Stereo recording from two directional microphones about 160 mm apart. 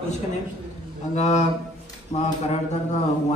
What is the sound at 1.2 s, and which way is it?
A man's voice, 45° left (ahead or behind).